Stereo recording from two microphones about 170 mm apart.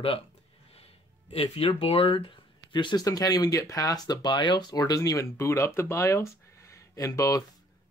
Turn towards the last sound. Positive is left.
turn(degrees=20)  # may be behind; listen again after turning